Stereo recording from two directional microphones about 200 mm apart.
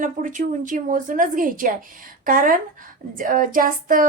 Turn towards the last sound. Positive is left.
turn(degrees=-45)  # may be behind; listen again after turning